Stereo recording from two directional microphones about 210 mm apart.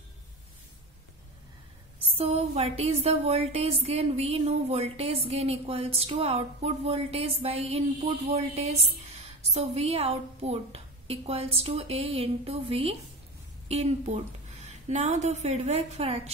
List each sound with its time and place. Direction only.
2.1 s a woman's voice: 30° right (ahead or behind)